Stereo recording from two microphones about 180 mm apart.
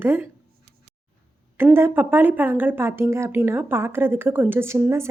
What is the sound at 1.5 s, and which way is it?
A woman's voice, 15° right (ahead or behind).